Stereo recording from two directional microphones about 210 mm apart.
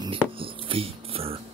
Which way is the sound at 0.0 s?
25° right (ahead or behind).